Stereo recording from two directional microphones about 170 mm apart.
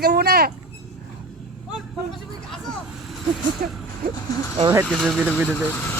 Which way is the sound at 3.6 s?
55° right (ahead or behind).